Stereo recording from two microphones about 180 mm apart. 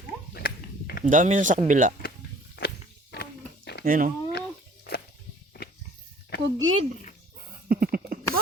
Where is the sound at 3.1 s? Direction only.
65° left (ahead or behind).